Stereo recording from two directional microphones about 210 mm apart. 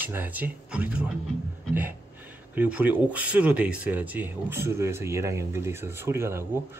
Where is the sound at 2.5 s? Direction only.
5° right (ahead or behind).